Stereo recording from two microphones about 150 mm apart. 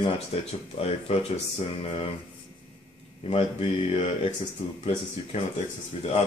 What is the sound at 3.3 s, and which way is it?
Speech, 40° left (ahead or behind).